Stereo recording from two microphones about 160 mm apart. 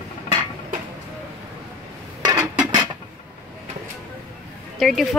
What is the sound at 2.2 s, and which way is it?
Dishes, 25° right (ahead or behind).